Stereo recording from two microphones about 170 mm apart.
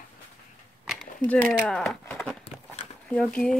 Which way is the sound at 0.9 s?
5° left (ahead or behind).